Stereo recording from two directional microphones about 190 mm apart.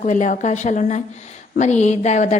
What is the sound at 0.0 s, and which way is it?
A woman's voice, 40° left (ahead or behind).